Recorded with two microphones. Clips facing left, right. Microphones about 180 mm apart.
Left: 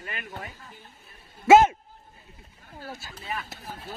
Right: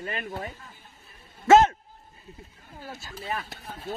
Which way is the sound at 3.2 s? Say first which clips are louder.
Right 3 dB; 40° right (ahead or behind).